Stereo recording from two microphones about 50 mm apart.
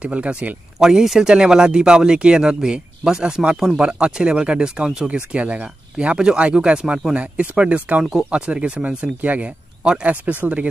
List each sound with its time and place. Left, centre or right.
0.0 s speech: right
0.7 s speech: centre; by 8.0 s right
8.0 s speech: centre
8.3 s speech: right